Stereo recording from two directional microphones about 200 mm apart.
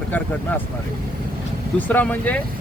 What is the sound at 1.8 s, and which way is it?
Speech, 10° left (ahead or behind).